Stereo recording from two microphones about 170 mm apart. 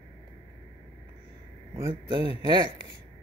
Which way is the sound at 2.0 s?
30° right (ahead or behind).